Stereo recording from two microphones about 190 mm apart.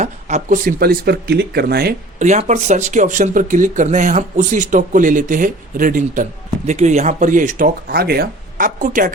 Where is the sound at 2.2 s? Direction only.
40° right (ahead or behind).